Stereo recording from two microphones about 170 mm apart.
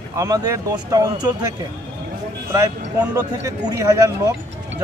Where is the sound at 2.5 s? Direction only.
20° right (ahead or behind).